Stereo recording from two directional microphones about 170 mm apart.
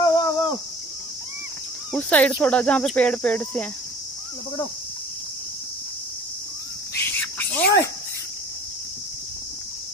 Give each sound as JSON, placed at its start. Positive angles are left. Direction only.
{"t": 0.0, "sound": "a sound", "side_deg": 25}
{"t": 2.0, "sound": "speech", "side_deg": 10}
{"t": 7.1, "sound": "bird", "side_deg": 10}